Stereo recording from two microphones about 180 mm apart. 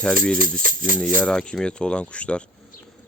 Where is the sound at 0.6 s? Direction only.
50° right (ahead or behind).